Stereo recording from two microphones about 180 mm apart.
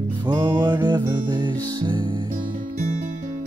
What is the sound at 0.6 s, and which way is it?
Music, 25° right (ahead or behind).